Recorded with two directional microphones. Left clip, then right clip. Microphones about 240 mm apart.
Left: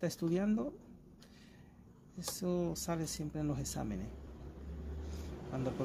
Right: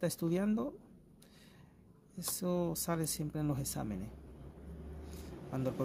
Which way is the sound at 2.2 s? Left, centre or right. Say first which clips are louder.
Right 1 dB; centre.